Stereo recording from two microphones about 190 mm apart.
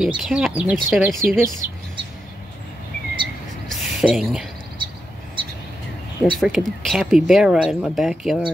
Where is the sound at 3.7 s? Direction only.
Centre (ahead or behind).